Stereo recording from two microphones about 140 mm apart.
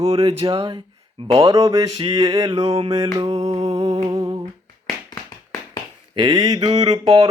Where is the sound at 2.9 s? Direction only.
25° right (ahead or behind).